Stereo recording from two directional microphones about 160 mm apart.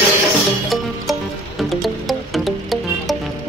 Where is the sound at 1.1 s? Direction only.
Centre (ahead or behind).